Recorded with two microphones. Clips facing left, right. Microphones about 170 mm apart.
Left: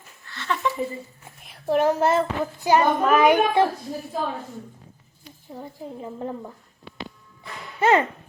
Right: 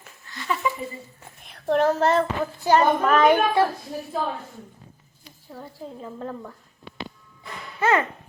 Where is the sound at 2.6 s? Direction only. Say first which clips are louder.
Even; 15° left (ahead or behind).